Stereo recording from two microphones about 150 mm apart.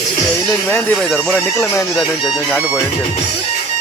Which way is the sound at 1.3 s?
20° left (ahead or behind).